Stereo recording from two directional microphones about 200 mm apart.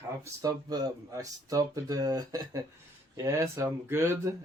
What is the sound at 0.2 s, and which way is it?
Speech, 20° right (ahead or behind).